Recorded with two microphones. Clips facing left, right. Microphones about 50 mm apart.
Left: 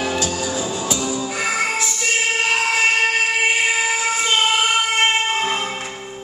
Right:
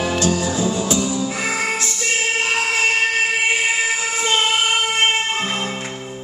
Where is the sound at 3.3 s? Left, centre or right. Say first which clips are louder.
Left 1 dB; centre.